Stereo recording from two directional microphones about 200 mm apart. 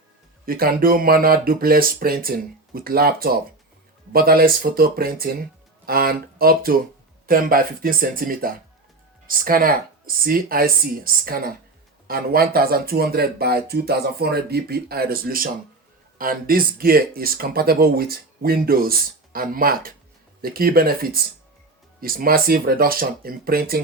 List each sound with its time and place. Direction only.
0.4 s speech: 45° right (ahead or behind)